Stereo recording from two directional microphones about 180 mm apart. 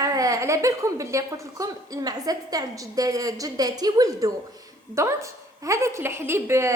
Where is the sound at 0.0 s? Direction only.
20° right (ahead or behind).